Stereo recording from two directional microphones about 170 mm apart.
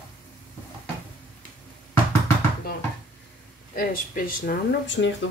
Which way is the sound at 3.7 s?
55° left (ahead or behind).